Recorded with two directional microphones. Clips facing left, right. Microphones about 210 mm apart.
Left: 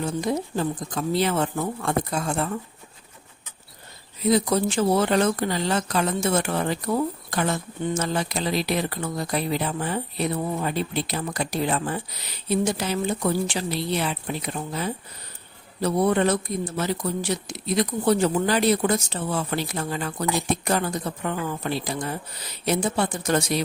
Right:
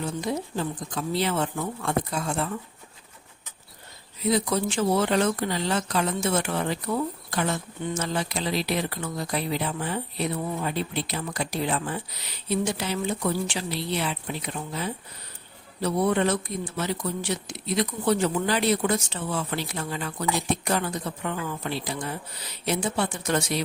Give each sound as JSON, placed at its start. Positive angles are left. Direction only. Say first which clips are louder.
{"t": 0.2, "sound": "speech", "louder": "left 3 dB", "side_deg": 45}
{"t": 4.3, "sound": "speech", "louder": "left 3 dB", "side_deg": 40}